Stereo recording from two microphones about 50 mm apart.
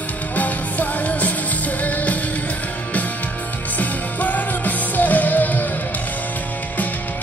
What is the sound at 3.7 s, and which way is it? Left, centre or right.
Music, left.